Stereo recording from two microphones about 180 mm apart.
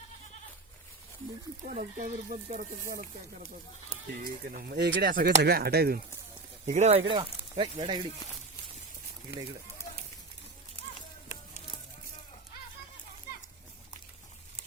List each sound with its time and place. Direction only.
1.6 s speech: 45° right (ahead or behind)
4.2 s speech: 55° right (ahead or behind)
6.7 s speech: 40° right (ahead or behind)
7.5 s speech: 25° right (ahead or behind)
11.3 s a sound: 35° left (ahead or behind)
13.3 s children playing: 60° left (ahead or behind)